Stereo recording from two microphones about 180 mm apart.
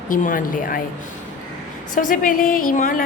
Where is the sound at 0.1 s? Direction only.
50° left (ahead or behind).